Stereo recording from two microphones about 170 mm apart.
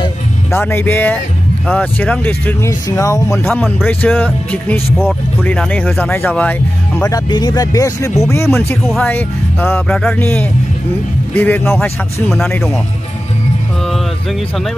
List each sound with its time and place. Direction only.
0.5 s speech: 15° left (ahead or behind)
3.4 s speech: 5° left (ahead or behind)
7.1 s speech: 25° left (ahead or behind)
8.8 s speech: centre (ahead or behind)
9.1 s speech: 10° left (ahead or behind)
12.3 s speech: centre (ahead or behind)